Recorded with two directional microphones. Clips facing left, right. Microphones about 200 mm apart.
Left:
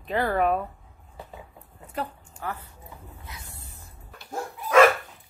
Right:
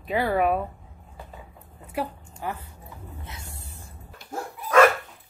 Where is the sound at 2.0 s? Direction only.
10° right (ahead or behind).